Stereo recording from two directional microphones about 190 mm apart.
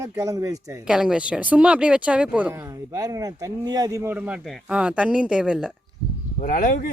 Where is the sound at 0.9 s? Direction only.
5° right (ahead or behind).